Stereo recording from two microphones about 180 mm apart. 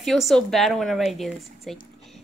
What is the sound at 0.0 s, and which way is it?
Speech, centre (ahead or behind).